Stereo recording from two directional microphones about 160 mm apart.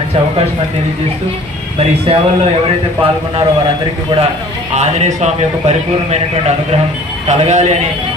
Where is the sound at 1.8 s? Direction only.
35° right (ahead or behind).